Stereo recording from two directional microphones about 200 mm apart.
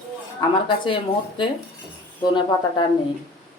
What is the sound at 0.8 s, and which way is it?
Speech, 25° left (ahead or behind).